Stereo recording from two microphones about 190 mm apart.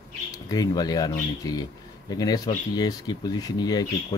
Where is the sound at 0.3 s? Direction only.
20° left (ahead or behind).